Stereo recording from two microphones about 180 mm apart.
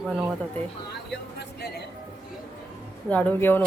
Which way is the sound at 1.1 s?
65° left (ahead or behind).